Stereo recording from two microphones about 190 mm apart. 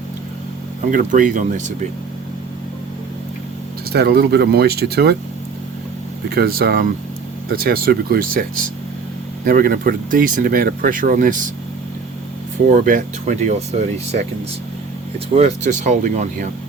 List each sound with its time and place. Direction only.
0.9 s speech: 45° right (ahead or behind)
3.9 s speech: 60° right (ahead or behind)
6.3 s speech: 50° right (ahead or behind)
12.6 s speech: 45° right (ahead or behind)
15.8 s speech: 40° right (ahead or behind)